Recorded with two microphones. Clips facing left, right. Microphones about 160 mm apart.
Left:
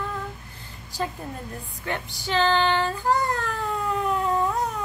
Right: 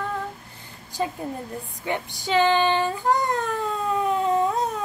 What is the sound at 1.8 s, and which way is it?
Speech, 15° right (ahead or behind).